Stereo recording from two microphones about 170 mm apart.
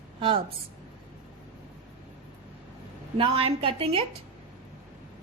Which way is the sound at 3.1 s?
35° right (ahead or behind).